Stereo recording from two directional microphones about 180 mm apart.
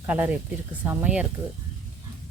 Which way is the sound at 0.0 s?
10° right (ahead or behind).